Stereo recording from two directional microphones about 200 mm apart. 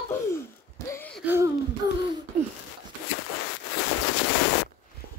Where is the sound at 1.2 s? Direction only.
10° right (ahead or behind).